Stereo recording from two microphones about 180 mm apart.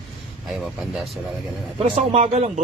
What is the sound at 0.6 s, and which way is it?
Speech, centre (ahead or behind).